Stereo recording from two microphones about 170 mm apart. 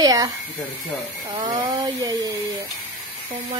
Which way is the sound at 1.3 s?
20° right (ahead or behind).